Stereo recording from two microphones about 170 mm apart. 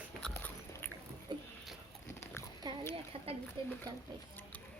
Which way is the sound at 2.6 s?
25° right (ahead or behind).